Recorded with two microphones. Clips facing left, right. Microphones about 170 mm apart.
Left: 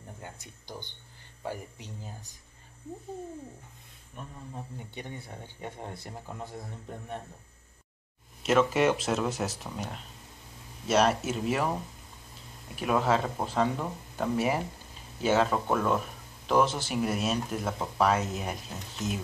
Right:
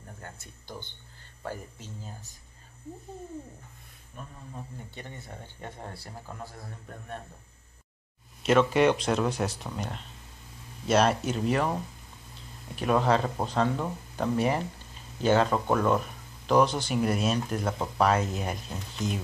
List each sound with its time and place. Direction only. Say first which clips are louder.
0.2 s speech: left 1 dB; 15° left (ahead or behind)
4.9 s speech: left 3 dB; 15° left (ahead or behind)
8.4 s speech: right 2 dB; centre (ahead or behind)
12.7 s speech: right 2 dB; 5° left (ahead or behind)